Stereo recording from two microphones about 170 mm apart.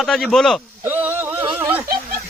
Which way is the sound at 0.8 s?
10° right (ahead or behind).